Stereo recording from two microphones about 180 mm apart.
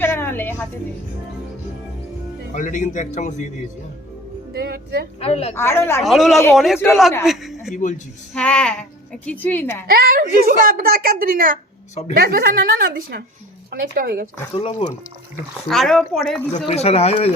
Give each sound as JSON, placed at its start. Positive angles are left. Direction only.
{"t": 0.0, "sound": "a sound", "side_deg": 10}
{"t": 2.5, "sound": "a man's voice", "side_deg": 45}
{"t": 4.5, "sound": "speech", "side_deg": -60}
{"t": 5.2, "sound": "speech", "side_deg": 35}
{"t": 5.5, "sound": "a woman's voice", "side_deg": 15}
{"t": 6.0, "sound": "speech", "side_deg": 0}
{"t": 6.7, "sound": "a woman's voice", "side_deg": 15}
{"t": 7.3, "sound": "a woman's voice", "side_deg": 0}
{"t": 9.9, "sound": "a woman's voice", "side_deg": -55}
{"t": 14.5, "sound": "speech", "side_deg": 30}
{"t": 15.7, "sound": "speech", "side_deg": 0}
{"t": 16.6, "sound": "speech", "side_deg": 35}